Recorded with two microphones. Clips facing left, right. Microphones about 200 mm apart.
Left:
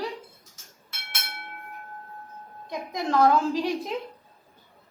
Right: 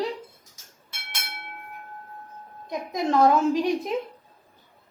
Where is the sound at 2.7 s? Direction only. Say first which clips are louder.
Right 2 dB; 20° right (ahead or behind).